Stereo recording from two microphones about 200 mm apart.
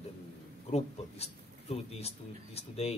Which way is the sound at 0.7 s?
30° left (ahead or behind).